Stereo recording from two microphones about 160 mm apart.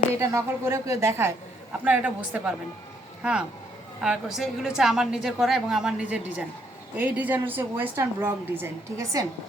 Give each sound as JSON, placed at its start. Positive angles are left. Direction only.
{"t": 0.2, "sound": "a woman's voice", "side_deg": -20}
{"t": 4.0, "sound": "a woman's voice", "side_deg": -5}